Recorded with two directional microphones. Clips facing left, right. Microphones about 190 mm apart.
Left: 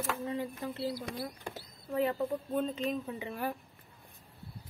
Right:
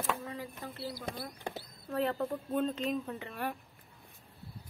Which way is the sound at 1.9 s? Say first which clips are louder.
Left 2 dB; 10° left (ahead or behind).